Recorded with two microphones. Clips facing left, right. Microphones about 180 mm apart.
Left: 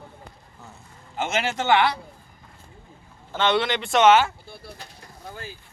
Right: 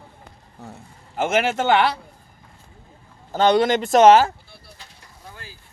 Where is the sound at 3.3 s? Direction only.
40° right (ahead or behind).